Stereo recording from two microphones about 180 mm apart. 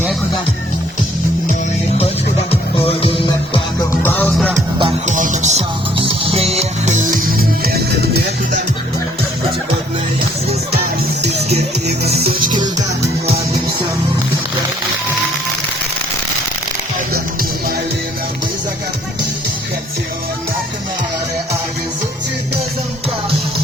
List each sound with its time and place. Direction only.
2.5 s music: 30° left (ahead or behind)
4.0 s music: 10° left (ahead or behind)
5.0 s music: 45° right (ahead or behind)
11.4 s music: 35° right (ahead or behind)